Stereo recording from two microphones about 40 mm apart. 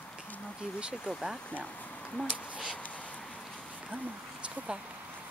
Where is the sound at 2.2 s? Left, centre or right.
Left.